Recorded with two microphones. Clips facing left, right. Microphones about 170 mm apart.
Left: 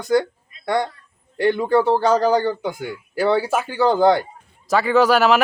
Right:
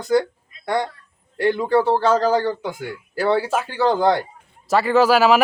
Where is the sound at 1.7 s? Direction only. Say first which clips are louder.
Even; 5° right (ahead or behind).